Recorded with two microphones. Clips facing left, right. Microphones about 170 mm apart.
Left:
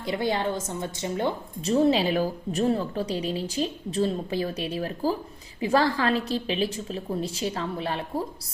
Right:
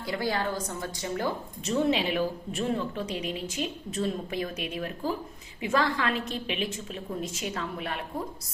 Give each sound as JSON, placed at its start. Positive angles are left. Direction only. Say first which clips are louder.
{"t": 0.0, "sound": "a woman's voice", "louder": "left 3 dB", "side_deg": 20}